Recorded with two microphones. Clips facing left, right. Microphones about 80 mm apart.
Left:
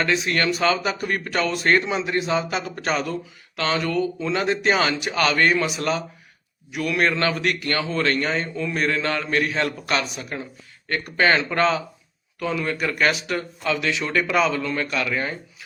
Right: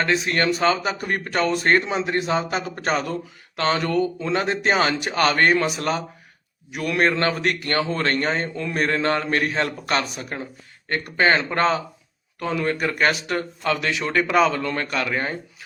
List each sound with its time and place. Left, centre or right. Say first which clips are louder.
0.0 s a man's voice: right 1 dB; right